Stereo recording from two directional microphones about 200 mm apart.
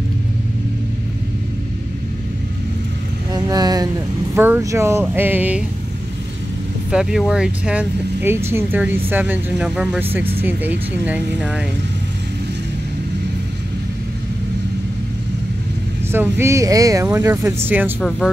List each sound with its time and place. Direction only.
3.4 s a sound: 20° right (ahead or behind)
4.4 s speech: 10° right (ahead or behind)
6.9 s speech: 5° right (ahead or behind)
16.1 s speech: 10° right (ahead or behind)